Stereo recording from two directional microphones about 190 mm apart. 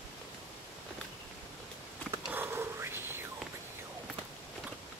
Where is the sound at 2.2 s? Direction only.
10° right (ahead or behind).